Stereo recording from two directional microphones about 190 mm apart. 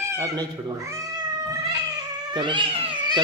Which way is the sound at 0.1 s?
20° right (ahead or behind).